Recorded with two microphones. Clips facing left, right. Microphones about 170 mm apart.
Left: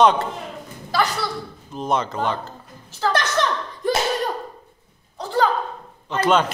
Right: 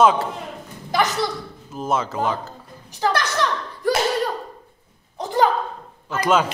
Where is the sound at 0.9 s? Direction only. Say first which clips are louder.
Right 2 dB; 20° right (ahead or behind).